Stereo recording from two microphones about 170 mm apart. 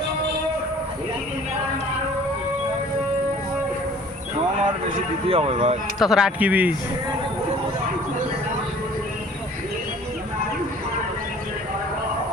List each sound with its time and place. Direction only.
5.3 s speech: 35° right (ahead or behind)
6.0 s speech: 5° right (ahead or behind)